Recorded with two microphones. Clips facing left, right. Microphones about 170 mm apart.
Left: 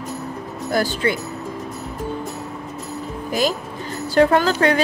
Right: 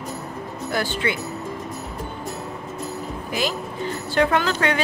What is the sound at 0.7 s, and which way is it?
Speech, 40° left (ahead or behind).